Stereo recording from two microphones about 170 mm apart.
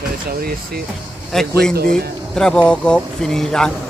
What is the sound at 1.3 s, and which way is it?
Speech, 5° left (ahead or behind).